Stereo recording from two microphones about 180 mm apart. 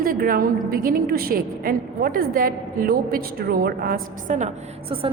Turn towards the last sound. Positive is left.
turn(degrees=-30)  # may be behind; listen again after turning